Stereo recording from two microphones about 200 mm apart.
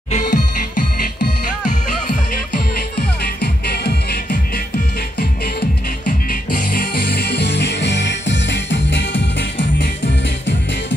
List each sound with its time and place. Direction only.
0.1 s music: 40° left (ahead or behind)
3.0 s music: 55° left (ahead or behind)
6.0 s music: 45° left (ahead or behind); by 9.8 s 60° left (ahead or behind)